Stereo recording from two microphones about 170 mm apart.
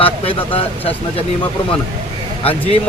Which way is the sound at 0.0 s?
35° left (ahead or behind).